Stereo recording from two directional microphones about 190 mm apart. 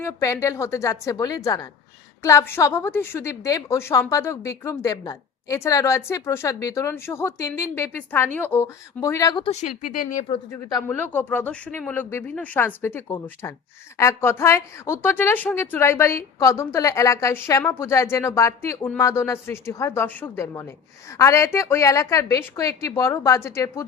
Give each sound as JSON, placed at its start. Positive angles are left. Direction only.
{"t": 0.0, "sound": "a woman's voice", "side_deg": 15}
{"t": 10.5, "sound": "a woman's voice", "side_deg": 15}